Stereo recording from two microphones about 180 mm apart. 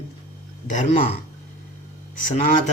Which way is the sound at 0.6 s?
45° left (ahead or behind).